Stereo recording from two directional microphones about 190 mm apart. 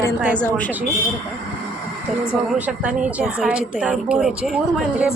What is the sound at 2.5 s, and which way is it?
A woman's voice, 5° right (ahead or behind).